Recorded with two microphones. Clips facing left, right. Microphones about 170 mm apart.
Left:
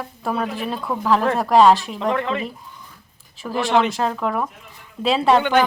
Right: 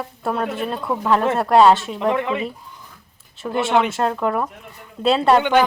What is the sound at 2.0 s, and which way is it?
Speech, 15° right (ahead or behind).